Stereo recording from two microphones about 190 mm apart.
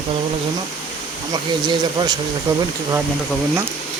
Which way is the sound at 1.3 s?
20° right (ahead or behind).